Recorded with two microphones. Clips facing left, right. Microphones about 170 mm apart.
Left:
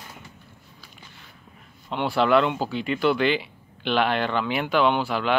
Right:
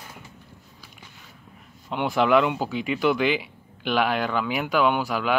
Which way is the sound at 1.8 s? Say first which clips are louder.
Even; 15° right (ahead or behind).